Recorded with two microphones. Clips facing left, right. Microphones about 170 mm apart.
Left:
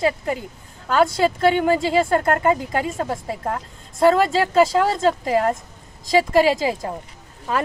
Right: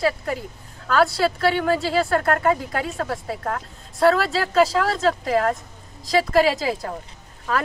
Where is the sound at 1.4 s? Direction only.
20° left (ahead or behind).